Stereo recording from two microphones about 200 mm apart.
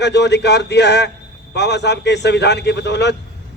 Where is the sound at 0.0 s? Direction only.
60° left (ahead or behind).